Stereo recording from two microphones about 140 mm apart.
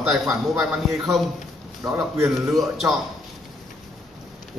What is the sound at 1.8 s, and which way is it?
Speech, 20° right (ahead or behind).